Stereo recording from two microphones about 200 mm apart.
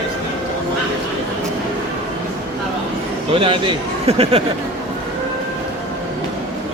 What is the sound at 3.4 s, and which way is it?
A man's voice, 30° right (ahead or behind).